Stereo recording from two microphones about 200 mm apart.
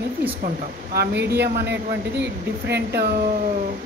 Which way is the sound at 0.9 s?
55° right (ahead or behind).